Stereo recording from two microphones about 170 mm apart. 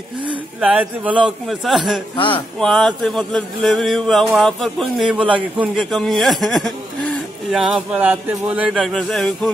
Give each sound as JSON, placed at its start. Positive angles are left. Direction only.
{"t": 0.6, "sound": "a man's voice", "side_deg": -10}
{"t": 2.1, "sound": "a sound", "side_deg": 30}
{"t": 2.6, "sound": "a man's voice", "side_deg": 5}